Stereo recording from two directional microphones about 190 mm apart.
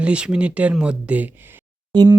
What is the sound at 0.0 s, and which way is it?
Speech, 5° right (ahead or behind).